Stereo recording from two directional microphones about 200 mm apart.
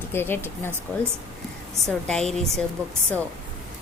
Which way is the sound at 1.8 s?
5° left (ahead or behind).